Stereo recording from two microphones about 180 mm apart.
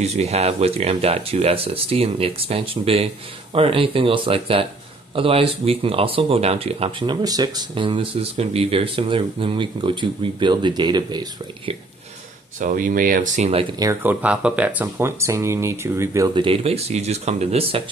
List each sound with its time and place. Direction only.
0.0 s speech: 35° right (ahead or behind)
12.5 s speech: 50° right (ahead or behind)
13.7 s speech: 20° right (ahead or behind)
14.2 s speech: 5° right (ahead or behind)
16.4 s speech: 35° right (ahead or behind)